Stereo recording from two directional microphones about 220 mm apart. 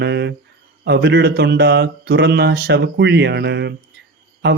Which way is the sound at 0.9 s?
50° right (ahead or behind).